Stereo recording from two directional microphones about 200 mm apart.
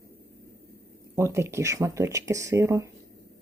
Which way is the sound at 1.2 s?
15° right (ahead or behind).